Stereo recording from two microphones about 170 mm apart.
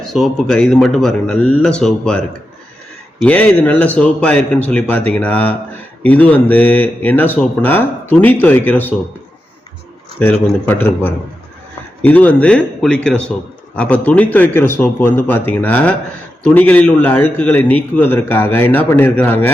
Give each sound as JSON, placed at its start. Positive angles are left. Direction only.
{"t": 0.1, "sound": "a man's voice", "side_deg": 0}
{"t": 10.2, "sound": "a man's voice", "side_deg": 10}